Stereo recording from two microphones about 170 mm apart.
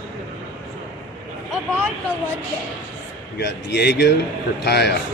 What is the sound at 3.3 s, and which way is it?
Speech, 75° left (ahead or behind).